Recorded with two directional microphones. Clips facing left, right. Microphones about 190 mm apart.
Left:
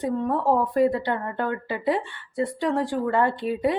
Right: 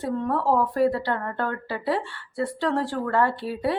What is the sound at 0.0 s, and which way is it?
A woman's voice, 15° left (ahead or behind).